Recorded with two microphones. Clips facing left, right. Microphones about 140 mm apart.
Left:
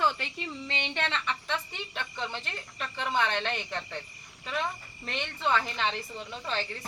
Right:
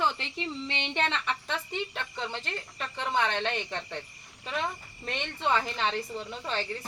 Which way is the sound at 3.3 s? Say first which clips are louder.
Right 1 dB; 25° right (ahead or behind).